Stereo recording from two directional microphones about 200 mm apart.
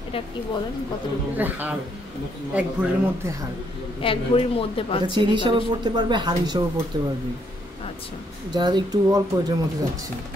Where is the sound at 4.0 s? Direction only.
25° left (ahead or behind).